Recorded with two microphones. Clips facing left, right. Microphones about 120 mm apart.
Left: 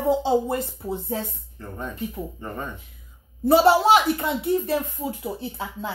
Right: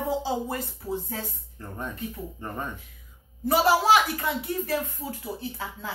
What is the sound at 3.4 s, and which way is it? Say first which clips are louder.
A woman's voice: left 5 dB; 30° left (ahead or behind).